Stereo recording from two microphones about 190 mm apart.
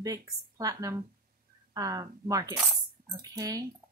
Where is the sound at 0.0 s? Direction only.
20° right (ahead or behind).